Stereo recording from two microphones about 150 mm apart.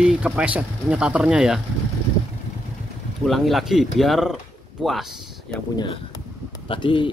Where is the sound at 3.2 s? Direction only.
Centre (ahead or behind).